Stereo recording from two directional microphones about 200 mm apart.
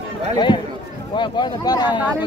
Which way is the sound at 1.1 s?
20° left (ahead or behind).